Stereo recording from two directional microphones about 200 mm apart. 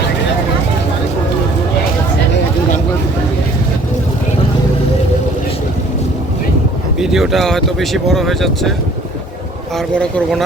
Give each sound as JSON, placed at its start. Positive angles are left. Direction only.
{"t": 7.0, "sound": "speech", "side_deg": 0}
{"t": 9.7, "sound": "speech", "side_deg": 5}